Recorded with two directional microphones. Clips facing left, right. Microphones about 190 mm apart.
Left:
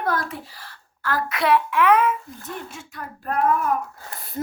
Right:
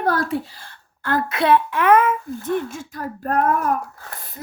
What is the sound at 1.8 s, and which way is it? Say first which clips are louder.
Speech: right 2 dB; 45° right (ahead or behind).